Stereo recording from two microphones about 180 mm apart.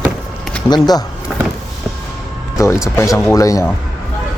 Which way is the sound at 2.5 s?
15° left (ahead or behind).